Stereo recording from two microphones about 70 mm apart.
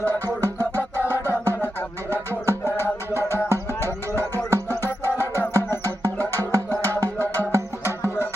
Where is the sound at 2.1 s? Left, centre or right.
Right.